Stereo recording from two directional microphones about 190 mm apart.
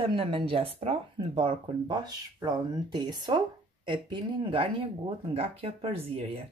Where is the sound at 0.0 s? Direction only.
30° right (ahead or behind).